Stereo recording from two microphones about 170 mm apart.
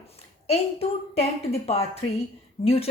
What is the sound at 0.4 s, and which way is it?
A woman's voice, 40° left (ahead or behind).